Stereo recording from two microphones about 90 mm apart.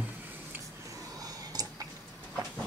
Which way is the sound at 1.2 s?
45° right (ahead or behind).